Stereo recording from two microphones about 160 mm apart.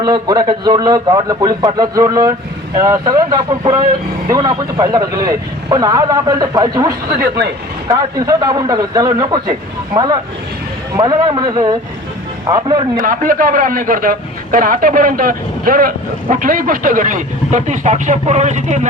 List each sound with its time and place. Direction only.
0.0 s a man's voice: 25° right (ahead or behind)
13.0 s a man's voice: 60° right (ahead or behind)